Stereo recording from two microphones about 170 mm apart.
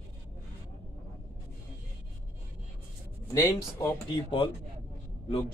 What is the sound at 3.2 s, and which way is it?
Speech, 15° left (ahead or behind).